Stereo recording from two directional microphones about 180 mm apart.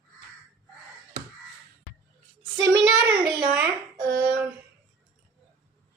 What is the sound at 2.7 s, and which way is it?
Music, 5° right (ahead or behind).